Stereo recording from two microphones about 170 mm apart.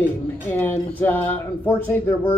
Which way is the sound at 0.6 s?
10° left (ahead or behind).